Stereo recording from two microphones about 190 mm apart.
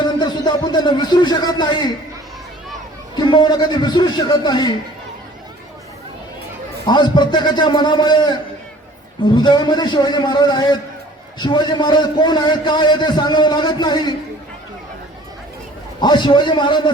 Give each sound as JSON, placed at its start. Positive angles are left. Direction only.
{"t": 0.0, "sound": "speech", "side_deg": 20}
{"t": 3.2, "sound": "a man's voice", "side_deg": 25}
{"t": 6.8, "sound": "a man's voice", "side_deg": 25}
{"t": 16.0, "sound": "a man's voice", "side_deg": 25}